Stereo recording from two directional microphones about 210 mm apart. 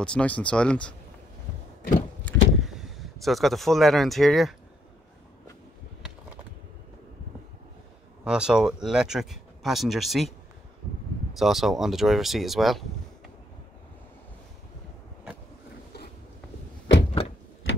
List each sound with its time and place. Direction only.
0.0 s speech: 5° left (ahead or behind)
2.2 s vehicle: centre (ahead or behind)
8.2 s speech: 5° right (ahead or behind)
11.3 s speech: centre (ahead or behind)
16.8 s door: 55° left (ahead or behind)